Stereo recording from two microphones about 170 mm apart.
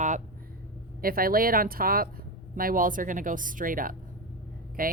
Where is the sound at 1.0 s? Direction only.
60° right (ahead or behind).